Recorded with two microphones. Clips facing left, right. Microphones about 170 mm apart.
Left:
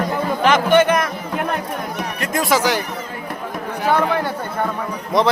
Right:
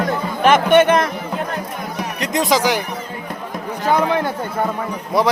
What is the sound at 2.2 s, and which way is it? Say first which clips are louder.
Speech: right 1 dB; 20° right (ahead or behind).